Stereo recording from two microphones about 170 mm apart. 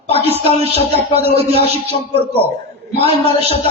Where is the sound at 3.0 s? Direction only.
35° left (ahead or behind).